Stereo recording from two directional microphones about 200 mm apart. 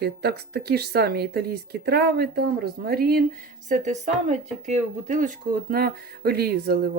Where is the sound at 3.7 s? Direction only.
35° right (ahead or behind).